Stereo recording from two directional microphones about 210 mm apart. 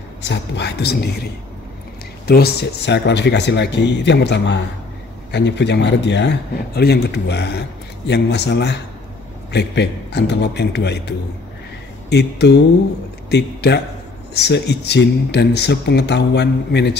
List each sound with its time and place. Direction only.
0.2 s speech: 55° left (ahead or behind)